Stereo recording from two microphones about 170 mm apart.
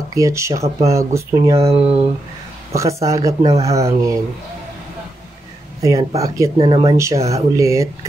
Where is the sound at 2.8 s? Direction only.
20° right (ahead or behind).